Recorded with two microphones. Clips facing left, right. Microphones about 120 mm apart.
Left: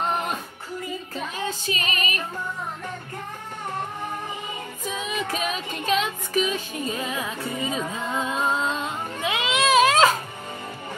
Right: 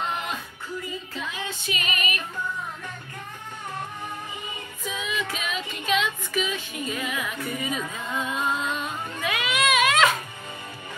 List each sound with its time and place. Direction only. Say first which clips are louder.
0.0 s music: left 4 dB; 40° left (ahead or behind)
4.8 s female singing: left 1 dB; 40° left (ahead or behind)